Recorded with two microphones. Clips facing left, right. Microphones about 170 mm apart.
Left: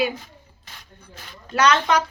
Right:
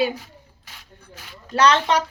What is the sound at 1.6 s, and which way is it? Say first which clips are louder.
Speech: right 1 dB; 30° right (ahead or behind).